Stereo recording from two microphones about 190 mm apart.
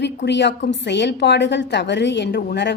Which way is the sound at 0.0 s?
65° left (ahead or behind).